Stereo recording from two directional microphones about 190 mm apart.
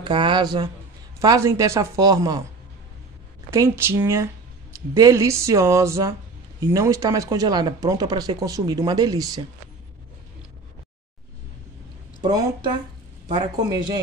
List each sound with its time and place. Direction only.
0.0 s speech: 25° right (ahead or behind)
3.4 s speech: 15° right (ahead or behind)
12.2 s speech: 20° right (ahead or behind)